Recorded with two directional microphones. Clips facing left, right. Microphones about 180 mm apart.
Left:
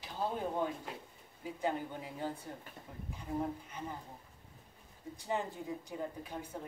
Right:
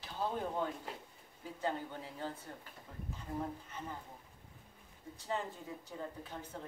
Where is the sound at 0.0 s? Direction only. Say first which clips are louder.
Left 1 dB; 15° left (ahead or behind).